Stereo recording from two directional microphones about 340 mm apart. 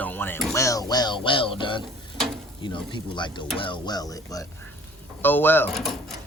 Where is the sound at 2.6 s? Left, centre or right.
Centre.